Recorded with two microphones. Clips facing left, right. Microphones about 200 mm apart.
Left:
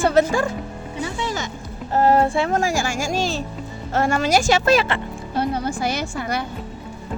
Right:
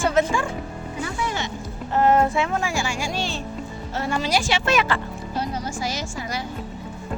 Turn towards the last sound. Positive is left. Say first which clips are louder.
# left 5 dB
turn(degrees=60)  # may be behind; listen again after turning